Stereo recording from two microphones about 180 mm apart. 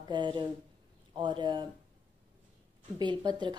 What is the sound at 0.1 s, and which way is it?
A woman's voice, 25° right (ahead or behind).